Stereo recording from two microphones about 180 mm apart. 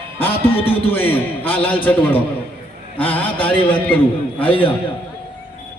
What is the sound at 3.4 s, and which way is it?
Speech, 10° left (ahead or behind).